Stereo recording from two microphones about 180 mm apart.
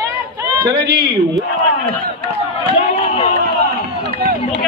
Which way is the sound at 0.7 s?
65° right (ahead or behind).